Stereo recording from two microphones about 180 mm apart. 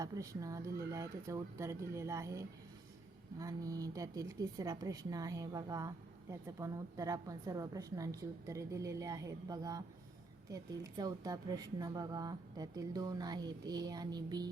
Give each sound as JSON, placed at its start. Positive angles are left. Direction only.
{"t": 0.0, "sound": "speech", "side_deg": -20}